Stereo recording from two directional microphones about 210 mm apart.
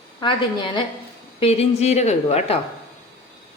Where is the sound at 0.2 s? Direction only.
25° left (ahead or behind).